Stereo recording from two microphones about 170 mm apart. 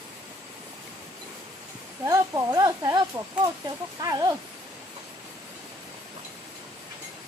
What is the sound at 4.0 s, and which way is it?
Speech, 20° right (ahead or behind).